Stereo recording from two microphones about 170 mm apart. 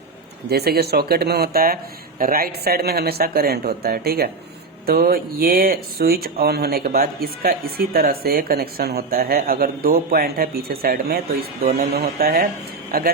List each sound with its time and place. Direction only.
0.5 s speech: 70° right (ahead or behind)